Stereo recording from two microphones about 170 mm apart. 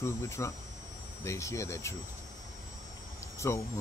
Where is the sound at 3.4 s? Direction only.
15° left (ahead or behind).